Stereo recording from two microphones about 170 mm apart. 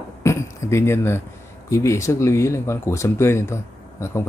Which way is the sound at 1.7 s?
15° left (ahead or behind).